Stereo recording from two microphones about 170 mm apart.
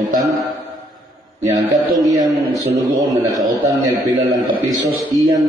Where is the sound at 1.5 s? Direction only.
20° right (ahead or behind).